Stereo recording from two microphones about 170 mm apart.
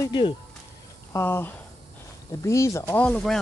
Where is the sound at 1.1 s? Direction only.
15° left (ahead or behind).